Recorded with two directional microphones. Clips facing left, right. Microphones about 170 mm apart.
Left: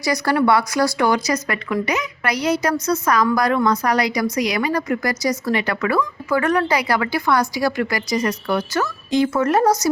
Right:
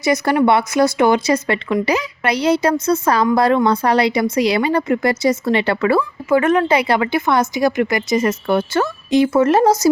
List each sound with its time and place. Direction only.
0.0 s a woman's voice: 20° right (ahead or behind)